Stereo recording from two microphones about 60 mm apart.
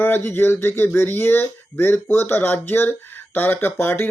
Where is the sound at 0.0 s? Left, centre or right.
Left.